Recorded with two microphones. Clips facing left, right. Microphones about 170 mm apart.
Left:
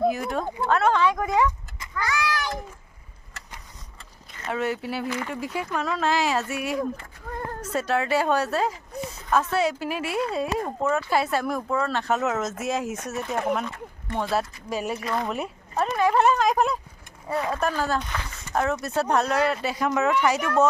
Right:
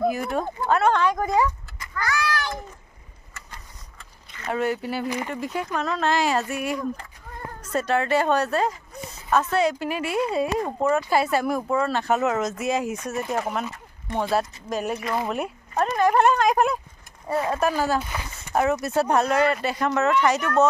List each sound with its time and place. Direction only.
0.0 s speech: centre (ahead or behind)
2.0 s a sound: 20° left (ahead or behind)
4.5 s speech: centre (ahead or behind)
14.7 s speech: 5° left (ahead or behind)